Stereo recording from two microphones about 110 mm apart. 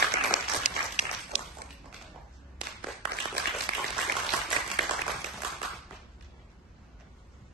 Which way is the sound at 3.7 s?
80° right.